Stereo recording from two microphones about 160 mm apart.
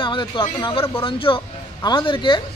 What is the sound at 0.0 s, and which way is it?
Speech, 30° left (ahead or behind).